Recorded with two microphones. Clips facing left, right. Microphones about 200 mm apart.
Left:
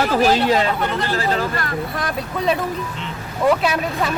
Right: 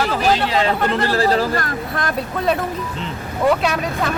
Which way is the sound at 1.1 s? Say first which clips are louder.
Right 4 dB; 35° right (ahead or behind).